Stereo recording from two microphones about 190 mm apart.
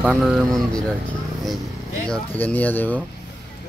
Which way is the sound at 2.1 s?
10° left (ahead or behind).